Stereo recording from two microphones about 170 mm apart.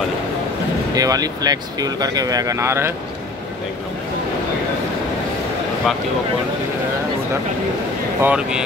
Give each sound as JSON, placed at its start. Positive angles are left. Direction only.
{"t": 0.9, "sound": "speech", "side_deg": -20}
{"t": 8.2, "sound": "speech", "side_deg": -5}